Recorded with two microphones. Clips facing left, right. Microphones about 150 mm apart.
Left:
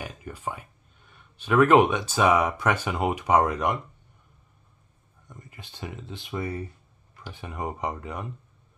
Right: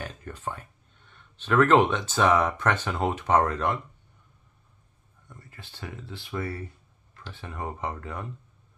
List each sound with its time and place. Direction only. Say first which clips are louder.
0.0 s speech: left 1 dB; 10° left (ahead or behind)
5.3 s speech: left 2 dB; 15° left (ahead or behind)